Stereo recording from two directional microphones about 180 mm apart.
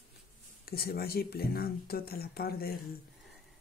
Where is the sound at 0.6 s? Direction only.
60° left (ahead or behind).